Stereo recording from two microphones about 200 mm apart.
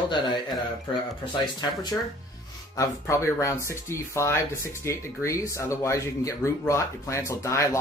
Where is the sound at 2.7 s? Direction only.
15° left (ahead or behind).